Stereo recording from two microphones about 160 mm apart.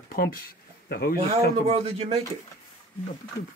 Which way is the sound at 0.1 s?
65° left (ahead or behind).